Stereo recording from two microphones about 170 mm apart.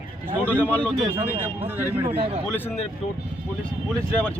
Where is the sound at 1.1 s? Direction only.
10° right (ahead or behind).